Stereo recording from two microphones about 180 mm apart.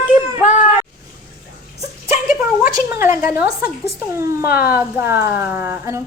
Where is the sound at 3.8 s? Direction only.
15° right (ahead or behind).